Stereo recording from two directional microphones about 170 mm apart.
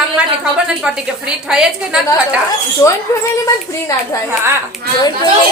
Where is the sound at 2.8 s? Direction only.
20° left (ahead or behind).